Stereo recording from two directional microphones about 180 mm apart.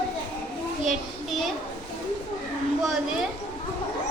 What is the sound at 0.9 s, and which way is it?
Speech, centre (ahead or behind).